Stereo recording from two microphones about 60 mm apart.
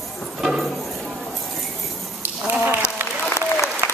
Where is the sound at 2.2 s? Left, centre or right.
Right.